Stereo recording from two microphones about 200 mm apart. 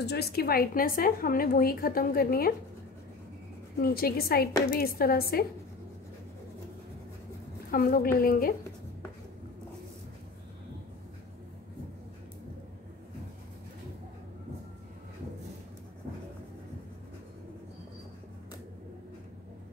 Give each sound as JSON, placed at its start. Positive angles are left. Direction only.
{"t": 0.0, "sound": "a woman's voice", "side_deg": 55}
{"t": 3.7, "sound": "a woman's voice", "side_deg": 50}
{"t": 7.7, "sound": "a woman's voice", "side_deg": 45}